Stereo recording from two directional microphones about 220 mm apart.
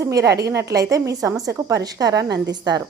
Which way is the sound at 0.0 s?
15° right (ahead or behind).